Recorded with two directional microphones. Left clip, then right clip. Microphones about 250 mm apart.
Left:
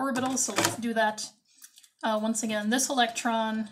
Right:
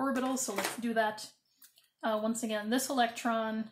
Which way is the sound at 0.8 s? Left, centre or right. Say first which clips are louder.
Left 5 dB; centre.